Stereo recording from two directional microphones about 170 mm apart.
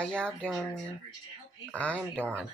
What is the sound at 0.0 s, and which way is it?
Speech, 5° left (ahead or behind).